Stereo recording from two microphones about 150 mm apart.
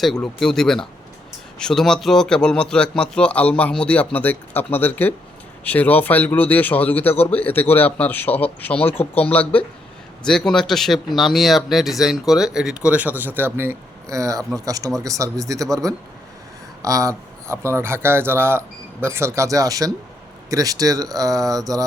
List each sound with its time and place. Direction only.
0.0 s a man's voice: centre (ahead or behind); by 21.8 s 25° right (ahead or behind)